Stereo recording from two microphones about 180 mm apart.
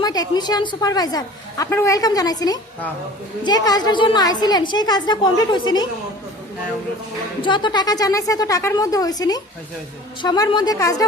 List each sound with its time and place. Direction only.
0.0 s a woman's voice: 20° left (ahead or behind)
7.4 s a woman's voice: 25° left (ahead or behind)